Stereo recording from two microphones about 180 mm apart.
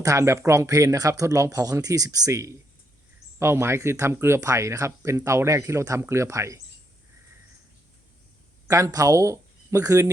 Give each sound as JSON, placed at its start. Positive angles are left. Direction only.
{"t": 0.0, "sound": "speech", "side_deg": -15}
{"t": 8.6, "sound": "speech", "side_deg": -15}